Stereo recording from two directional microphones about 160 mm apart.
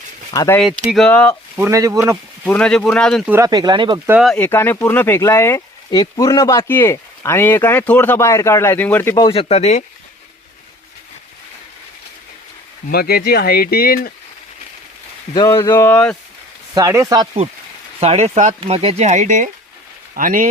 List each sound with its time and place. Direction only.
0.3 s speech: 15° left (ahead or behind)
0.9 s speech: 5° left (ahead or behind)
1.5 s speech: 15° right (ahead or behind)
2.5 s speech: 5° left (ahead or behind)
3.2 s speech: 20° right (ahead or behind)
4.4 s speech: 10° left (ahead or behind)
9.2 s speech: 35° left (ahead or behind)
12.9 s speech: 75° left (ahead or behind)
15.4 s speech: 20° left (ahead or behind)
16.7 s speech: 20° right (ahead or behind)
18.0 s speech: 40° right (ahead or behind)